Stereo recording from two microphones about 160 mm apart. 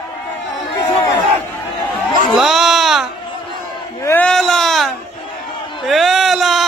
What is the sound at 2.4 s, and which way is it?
Sheep, centre (ahead or behind).